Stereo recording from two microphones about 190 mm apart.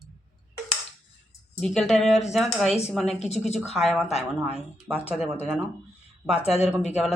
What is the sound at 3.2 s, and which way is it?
Speech, 35° left (ahead or behind).